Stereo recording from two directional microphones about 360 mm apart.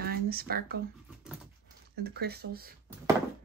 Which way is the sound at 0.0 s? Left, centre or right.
Right.